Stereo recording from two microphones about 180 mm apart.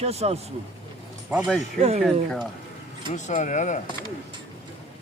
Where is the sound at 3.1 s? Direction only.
40° left (ahead or behind).